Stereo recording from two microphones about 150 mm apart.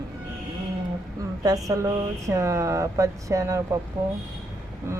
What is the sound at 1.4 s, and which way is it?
Speech, 25° right (ahead or behind).